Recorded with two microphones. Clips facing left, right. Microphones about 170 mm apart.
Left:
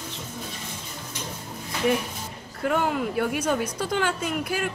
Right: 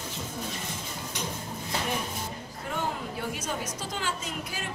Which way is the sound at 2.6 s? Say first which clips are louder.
Left 9 dB; 70° left (ahead or behind).